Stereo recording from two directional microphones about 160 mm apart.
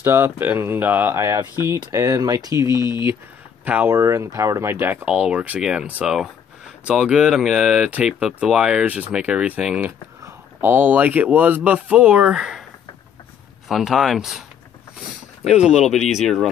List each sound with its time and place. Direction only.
0.0 s speech: 15° right (ahead or behind)
13.7 s speech: centre (ahead or behind)